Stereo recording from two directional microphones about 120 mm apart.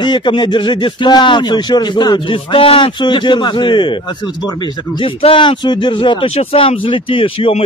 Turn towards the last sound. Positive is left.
turn(degrees=50)  # may be behind; listen again after turning